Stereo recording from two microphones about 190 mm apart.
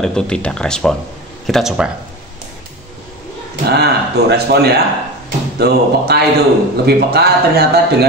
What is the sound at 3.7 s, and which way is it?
Speech, 60° right (ahead or behind).